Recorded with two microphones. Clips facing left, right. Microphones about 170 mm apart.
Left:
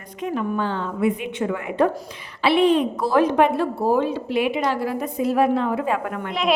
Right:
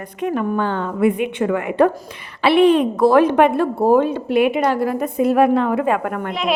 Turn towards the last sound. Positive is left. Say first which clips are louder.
# even
turn(degrees=0)  # may be behind; listen again after turning